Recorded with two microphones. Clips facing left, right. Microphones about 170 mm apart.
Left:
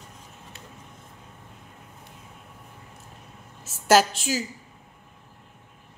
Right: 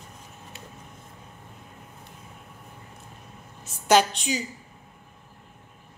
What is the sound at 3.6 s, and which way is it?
Speech, 5° left (ahead or behind).